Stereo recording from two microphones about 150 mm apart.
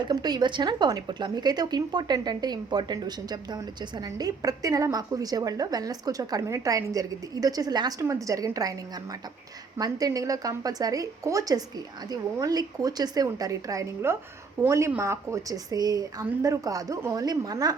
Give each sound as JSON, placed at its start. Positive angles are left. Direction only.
{"t": 0.0, "sound": "speech", "side_deg": -25}
{"t": 9.7, "sound": "speech", "side_deg": -25}